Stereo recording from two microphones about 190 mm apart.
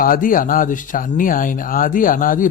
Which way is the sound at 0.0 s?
45° left (ahead or behind).